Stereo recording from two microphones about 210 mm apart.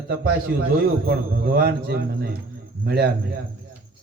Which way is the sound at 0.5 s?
45° right (ahead or behind).